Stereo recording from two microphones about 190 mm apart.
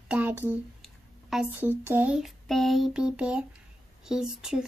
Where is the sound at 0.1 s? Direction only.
10° right (ahead or behind).